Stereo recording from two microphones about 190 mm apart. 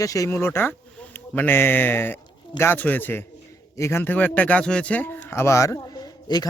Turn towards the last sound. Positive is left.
turn(degrees=25)  # may be behind; listen again after turning